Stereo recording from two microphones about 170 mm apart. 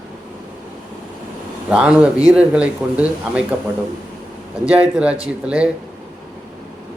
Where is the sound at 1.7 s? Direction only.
5° right (ahead or behind).